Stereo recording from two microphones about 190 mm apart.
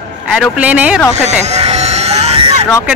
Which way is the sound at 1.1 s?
35° right (ahead or behind).